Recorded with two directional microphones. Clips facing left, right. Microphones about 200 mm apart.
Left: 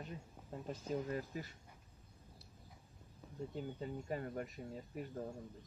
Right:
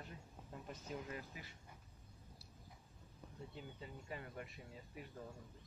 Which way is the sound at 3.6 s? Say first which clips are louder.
Left 11 dB; 45° left (ahead or behind).